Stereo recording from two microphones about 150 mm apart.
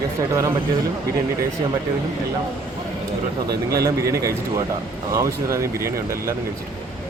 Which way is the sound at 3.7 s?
20° right (ahead or behind).